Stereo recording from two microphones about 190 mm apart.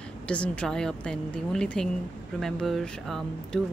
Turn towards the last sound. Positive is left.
turn(degrees=0)  # may be behind; listen again after turning